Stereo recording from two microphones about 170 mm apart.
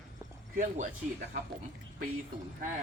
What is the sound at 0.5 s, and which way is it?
Speech, 50° right (ahead or behind).